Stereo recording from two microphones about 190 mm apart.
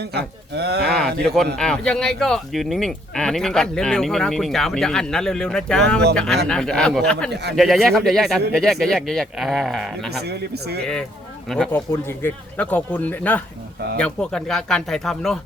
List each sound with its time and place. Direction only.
0.0 s speech: 60° right (ahead or behind)
1.5 s speech: 5° left (ahead or behind)
10.1 s speech: 60° right (ahead or behind)
11.4 s speech: 5° left (ahead or behind)